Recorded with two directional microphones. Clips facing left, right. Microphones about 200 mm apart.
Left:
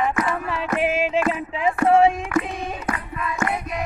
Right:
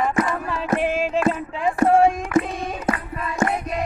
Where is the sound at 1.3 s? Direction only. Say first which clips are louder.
Even; 5° left (ahead or behind).